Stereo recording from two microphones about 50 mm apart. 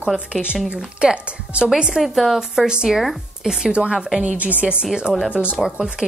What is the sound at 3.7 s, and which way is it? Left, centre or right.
Speech, centre.